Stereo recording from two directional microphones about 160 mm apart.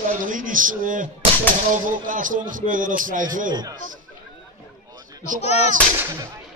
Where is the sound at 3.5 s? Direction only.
25° right (ahead or behind).